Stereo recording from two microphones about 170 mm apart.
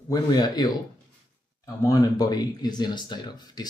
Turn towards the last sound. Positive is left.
turn(degrees=25)  # may be behind; listen again after turning